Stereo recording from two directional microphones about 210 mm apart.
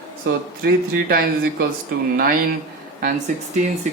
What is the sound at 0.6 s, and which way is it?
Speech, 45° right (ahead or behind).